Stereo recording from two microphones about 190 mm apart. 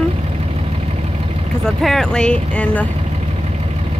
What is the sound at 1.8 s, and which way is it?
Speech, centre (ahead or behind).